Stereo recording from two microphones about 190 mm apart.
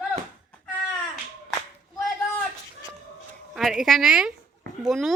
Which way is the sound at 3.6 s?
Centre (ahead or behind).